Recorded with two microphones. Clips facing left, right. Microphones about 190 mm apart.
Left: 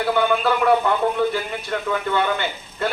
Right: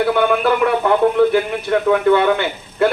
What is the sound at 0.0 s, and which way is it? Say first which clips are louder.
A man's voice: right 4 dB; 65° right (ahead or behind).